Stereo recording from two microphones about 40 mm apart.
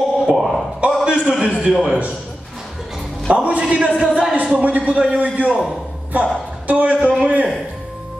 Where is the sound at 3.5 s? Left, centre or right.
Right.